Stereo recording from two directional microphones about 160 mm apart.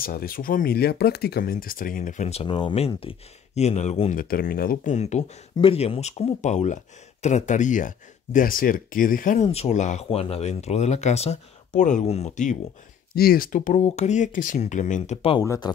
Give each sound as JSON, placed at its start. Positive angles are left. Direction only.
{"t": 0.0, "sound": "speech", "side_deg": 65}
{"t": 4.1, "sound": "speech", "side_deg": 65}
{"t": 9.5, "sound": "speech", "side_deg": 45}
{"t": 13.1, "sound": "speech", "side_deg": 70}
{"t": 15.4, "sound": "speech", "side_deg": 20}